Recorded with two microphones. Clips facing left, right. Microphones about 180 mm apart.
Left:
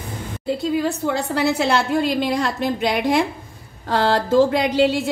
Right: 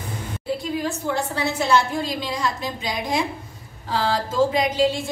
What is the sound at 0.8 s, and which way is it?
A woman's voice, 75° left (ahead or behind).